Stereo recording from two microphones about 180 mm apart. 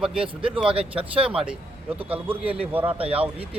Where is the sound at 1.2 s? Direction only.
30° right (ahead or behind).